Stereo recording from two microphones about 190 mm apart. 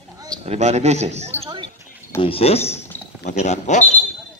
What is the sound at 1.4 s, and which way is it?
Basketball bounce, 25° right (ahead or behind).